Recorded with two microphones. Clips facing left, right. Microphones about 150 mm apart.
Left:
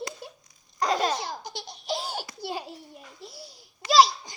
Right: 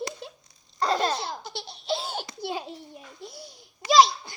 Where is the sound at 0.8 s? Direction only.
15° left (ahead or behind).